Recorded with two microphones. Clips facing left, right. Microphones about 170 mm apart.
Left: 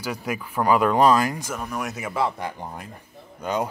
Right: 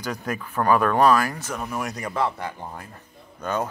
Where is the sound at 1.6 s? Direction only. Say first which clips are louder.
Even; centre (ahead or behind).